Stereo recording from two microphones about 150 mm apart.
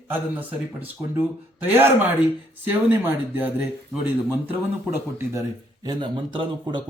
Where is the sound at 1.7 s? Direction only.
15° right (ahead or behind).